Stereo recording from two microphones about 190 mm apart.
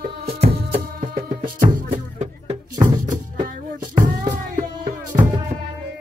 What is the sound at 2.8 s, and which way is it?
Music, 20° right (ahead or behind).